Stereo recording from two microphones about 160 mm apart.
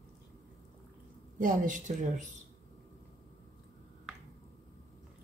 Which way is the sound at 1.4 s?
55° right (ahead or behind).